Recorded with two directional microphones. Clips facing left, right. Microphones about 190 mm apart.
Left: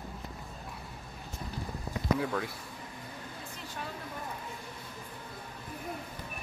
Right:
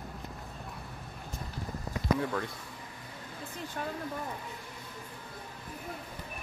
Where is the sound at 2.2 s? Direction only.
5° left (ahead or behind).